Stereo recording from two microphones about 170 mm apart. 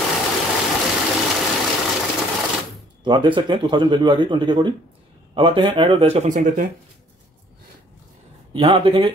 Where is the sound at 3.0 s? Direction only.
30° right (ahead or behind); by 6.6 s 50° right (ahead or behind).